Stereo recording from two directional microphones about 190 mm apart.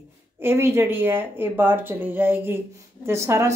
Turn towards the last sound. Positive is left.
turn(degrees=-15)  # may be behind; listen again after turning